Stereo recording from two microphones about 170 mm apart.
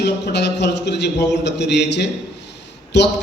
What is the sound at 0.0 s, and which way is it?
A man's voice, 85° left.